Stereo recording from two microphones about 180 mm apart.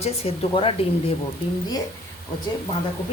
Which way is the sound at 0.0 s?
35° left (ahead or behind).